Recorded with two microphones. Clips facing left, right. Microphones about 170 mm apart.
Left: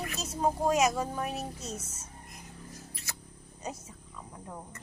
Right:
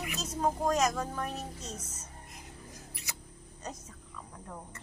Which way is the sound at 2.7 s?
15° right (ahead or behind).